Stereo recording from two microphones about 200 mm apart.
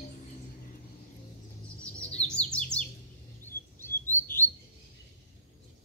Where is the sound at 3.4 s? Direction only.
10° left (ahead or behind).